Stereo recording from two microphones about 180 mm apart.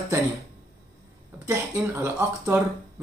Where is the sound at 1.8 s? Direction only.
15° right (ahead or behind).